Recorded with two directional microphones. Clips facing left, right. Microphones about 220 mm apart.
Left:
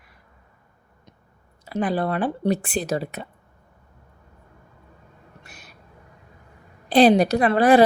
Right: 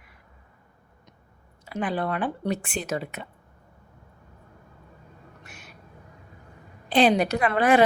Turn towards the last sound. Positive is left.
turn(degrees=35)  # may be behind; listen again after turning